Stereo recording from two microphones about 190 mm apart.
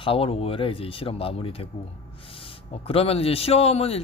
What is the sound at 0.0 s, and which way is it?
Speech, 30° left (ahead or behind).